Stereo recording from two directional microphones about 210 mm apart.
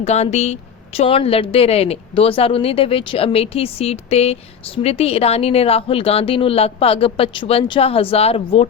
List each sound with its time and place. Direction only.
0.0 s a woman's voice: 30° left (ahead or behind)